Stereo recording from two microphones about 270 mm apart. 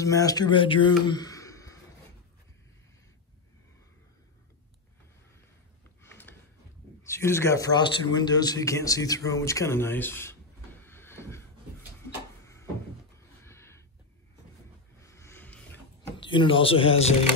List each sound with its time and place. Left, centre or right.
0.0 s speech: centre
6.0 s a sound: centre
7.0 s a man's voice: centre
13.4 s gasp: centre
15.0 s music: centre
16.2 s speech: centre